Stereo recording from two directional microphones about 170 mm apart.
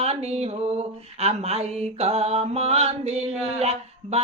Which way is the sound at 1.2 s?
40° right (ahead or behind).